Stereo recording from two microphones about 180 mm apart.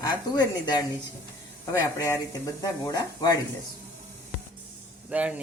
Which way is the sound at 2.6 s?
20° left (ahead or behind).